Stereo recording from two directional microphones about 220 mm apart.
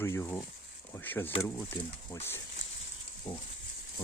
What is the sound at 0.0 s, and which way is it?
Speech, 10° left (ahead or behind).